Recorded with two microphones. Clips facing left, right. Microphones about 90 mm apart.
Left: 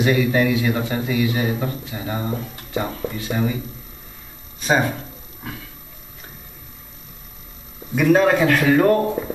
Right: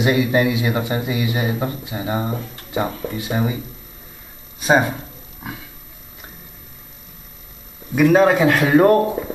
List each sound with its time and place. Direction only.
0.0 s a man's voice: 15° right (ahead or behind)
4.6 s a man's voice: 15° right (ahead or behind)
7.9 s a man's voice: 5° right (ahead or behind)